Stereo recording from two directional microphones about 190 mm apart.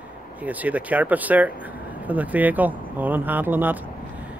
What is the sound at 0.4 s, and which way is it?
Speech, 10° right (ahead or behind).